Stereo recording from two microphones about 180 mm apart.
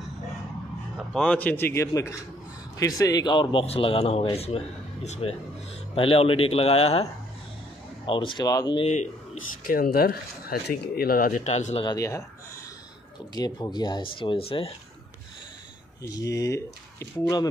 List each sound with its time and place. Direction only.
0.9 s a man's voice: 5° left (ahead or behind); by 7.1 s 35° left (ahead or behind)
8.1 s speech: 30° left (ahead or behind)
8.8 s speech: 40° left (ahead or behind)
11.4 s a man's voice: 35° left (ahead or behind)
11.8 s speech: 20° left (ahead or behind)
13.3 s speech: 20° left (ahead or behind)
16.0 s speech: 20° left (ahead or behind)